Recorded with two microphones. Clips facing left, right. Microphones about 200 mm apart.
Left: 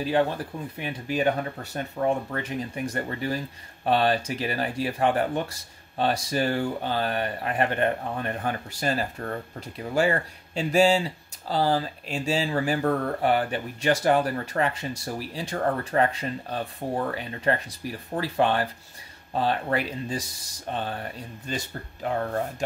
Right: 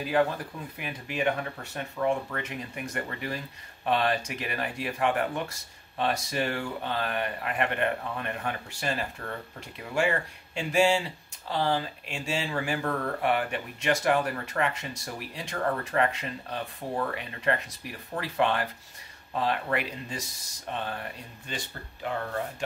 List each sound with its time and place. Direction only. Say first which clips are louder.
0.7 s speech: left 5 dB; 35° left (ahead or behind)
21.5 s speech: left 5 dB; 40° left (ahead or behind)